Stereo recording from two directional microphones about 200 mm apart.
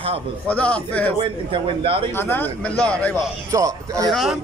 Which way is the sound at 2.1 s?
10° left (ahead or behind).